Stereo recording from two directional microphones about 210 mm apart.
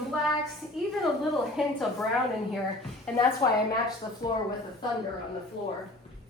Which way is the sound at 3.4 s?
15° left (ahead or behind).